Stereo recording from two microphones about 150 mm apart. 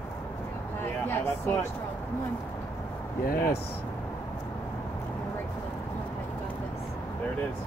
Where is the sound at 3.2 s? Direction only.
80° left.